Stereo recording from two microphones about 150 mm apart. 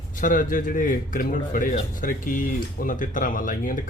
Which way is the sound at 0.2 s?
65° left (ahead or behind).